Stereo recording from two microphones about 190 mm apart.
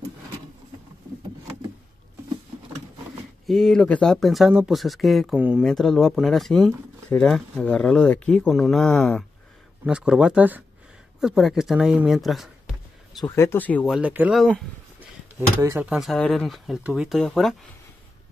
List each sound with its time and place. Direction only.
3.4 s speech: centre (ahead or behind)
13.2 s speech: 15° left (ahead or behind)
13.8 s speech: 5° right (ahead or behind)
15.6 s speech: 15° right (ahead or behind)
15.9 s speech: centre (ahead or behind)